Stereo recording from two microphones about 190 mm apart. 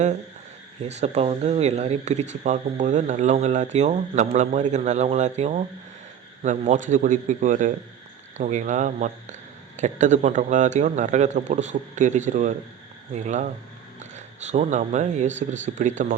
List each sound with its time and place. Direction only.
0.8 s speech: 35° right (ahead or behind)